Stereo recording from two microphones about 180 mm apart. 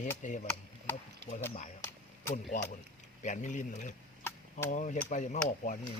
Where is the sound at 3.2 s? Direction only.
45° left (ahead or behind).